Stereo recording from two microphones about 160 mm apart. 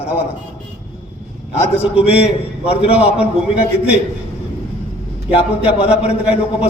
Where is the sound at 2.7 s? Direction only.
35° left (ahead or behind).